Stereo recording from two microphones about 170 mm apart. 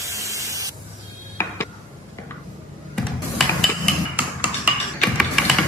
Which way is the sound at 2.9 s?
Centre (ahead or behind).